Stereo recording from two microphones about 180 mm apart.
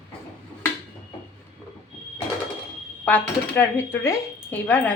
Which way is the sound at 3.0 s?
10° left (ahead or behind).